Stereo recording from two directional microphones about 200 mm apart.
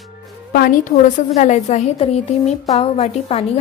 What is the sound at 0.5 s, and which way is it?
A woman's voice, 45° left (ahead or behind).